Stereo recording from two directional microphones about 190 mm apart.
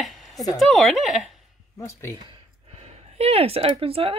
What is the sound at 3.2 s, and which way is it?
Speech, 30° right (ahead or behind).